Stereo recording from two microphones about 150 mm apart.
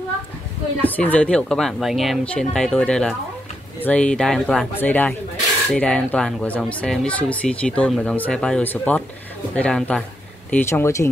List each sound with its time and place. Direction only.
0.8 s speech: 10° left (ahead or behind)
10.5 s speech: 15° left (ahead or behind)